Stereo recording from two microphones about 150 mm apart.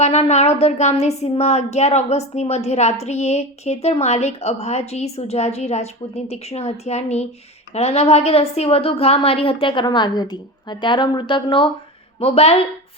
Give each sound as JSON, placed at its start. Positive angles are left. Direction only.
{"t": 0.0, "sound": "a woman's voice", "side_deg": 45}